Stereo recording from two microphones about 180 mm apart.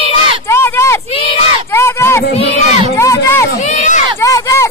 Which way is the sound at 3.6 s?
45° left (ahead or behind).